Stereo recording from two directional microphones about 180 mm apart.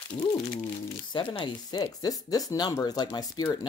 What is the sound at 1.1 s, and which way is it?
Speech, 25° left (ahead or behind).